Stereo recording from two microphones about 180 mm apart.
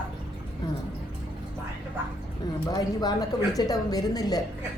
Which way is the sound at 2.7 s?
20° left (ahead or behind).